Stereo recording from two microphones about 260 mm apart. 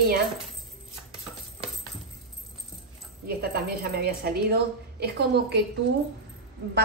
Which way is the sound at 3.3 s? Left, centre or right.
Right.